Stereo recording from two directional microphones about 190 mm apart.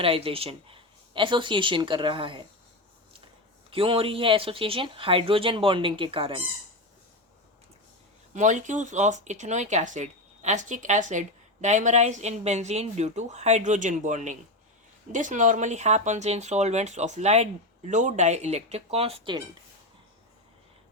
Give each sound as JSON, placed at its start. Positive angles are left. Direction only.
{"t": 0.0, "sound": "speech", "side_deg": -30}
{"t": 3.7, "sound": "speech", "side_deg": -30}
{"t": 8.3, "sound": "speech", "side_deg": -40}